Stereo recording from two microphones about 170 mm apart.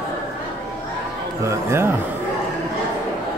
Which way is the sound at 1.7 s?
15° right (ahead or behind).